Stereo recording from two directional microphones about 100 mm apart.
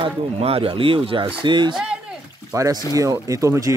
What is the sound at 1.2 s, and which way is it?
Speech, 50° right (ahead or behind).